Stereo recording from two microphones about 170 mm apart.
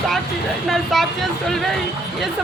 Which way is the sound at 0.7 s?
Centre (ahead or behind).